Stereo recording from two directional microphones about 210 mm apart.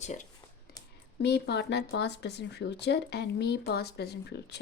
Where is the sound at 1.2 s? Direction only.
55° left (ahead or behind).